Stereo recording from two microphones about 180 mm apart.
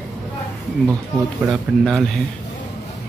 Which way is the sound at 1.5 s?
Centre (ahead or behind).